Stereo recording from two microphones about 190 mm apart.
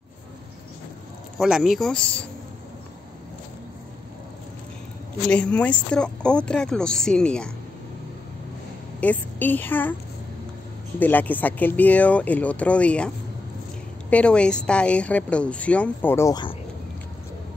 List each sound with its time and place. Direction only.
1.4 s speech: 5° right (ahead or behind)
5.3 s a woman's voice: 5° left (ahead or behind)
9.0 s a woman's voice: 10° left (ahead or behind)
11.0 s a woman's voice: 10° left (ahead or behind)
14.1 s a woman's voice: 5° left (ahead or behind)